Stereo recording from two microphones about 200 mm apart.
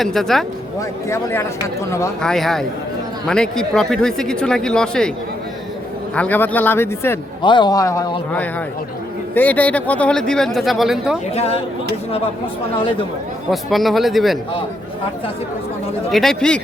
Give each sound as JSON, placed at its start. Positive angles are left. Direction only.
{"t": 0.0, "sound": "speech", "side_deg": 0}
{"t": 0.8, "sound": "speech", "side_deg": 15}
{"t": 2.2, "sound": "speech", "side_deg": 0}
{"t": 6.1, "sound": "speech", "side_deg": 10}
{"t": 7.4, "sound": "speech", "side_deg": 20}
{"t": 11.3, "sound": "speech", "side_deg": 30}
{"t": 13.5, "sound": "speech", "side_deg": 0}
{"t": 16.1, "sound": "speech", "side_deg": 5}